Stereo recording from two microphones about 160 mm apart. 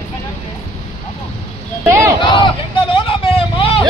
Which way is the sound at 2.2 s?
30° left (ahead or behind).